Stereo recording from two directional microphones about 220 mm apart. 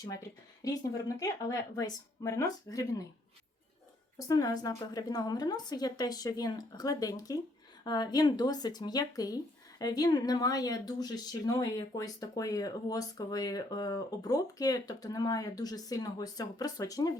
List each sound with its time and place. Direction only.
0.0 s speech: 15° left (ahead or behind)
4.3 s speech: 15° left (ahead or behind)